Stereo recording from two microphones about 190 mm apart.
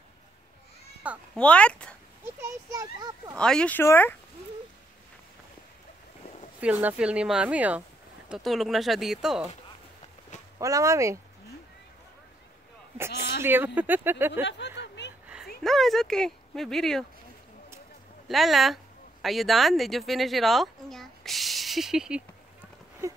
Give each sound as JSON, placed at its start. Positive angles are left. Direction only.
{"t": 1.3, "sound": "speech", "side_deg": 5}
{"t": 2.2, "sound": "speech", "side_deg": -15}
{"t": 3.3, "sound": "speech", "side_deg": 5}
{"t": 6.6, "sound": "speech", "side_deg": -10}
{"t": 10.6, "sound": "speech", "side_deg": -15}
{"t": 13.4, "sound": "speech", "side_deg": -10}
{"t": 14.8, "sound": "a sound", "side_deg": 65}
{"t": 15.6, "sound": "speech", "side_deg": 0}
{"t": 18.3, "sound": "speech", "side_deg": 0}